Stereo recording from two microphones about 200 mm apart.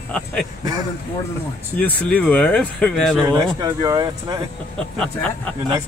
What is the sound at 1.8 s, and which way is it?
Speech, 10° left (ahead or behind).